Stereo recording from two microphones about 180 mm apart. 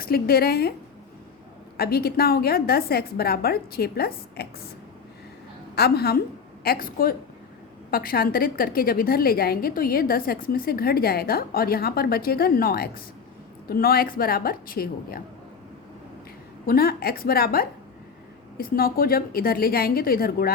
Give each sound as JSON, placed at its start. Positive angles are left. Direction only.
{"t": 0.0, "sound": "a woman's voice", "side_deg": 60}
{"t": 1.7, "sound": "a woman's voice", "side_deg": 60}
{"t": 5.7, "sound": "a woman's voice", "side_deg": 60}
{"t": 16.6, "sound": "a woman's voice", "side_deg": 55}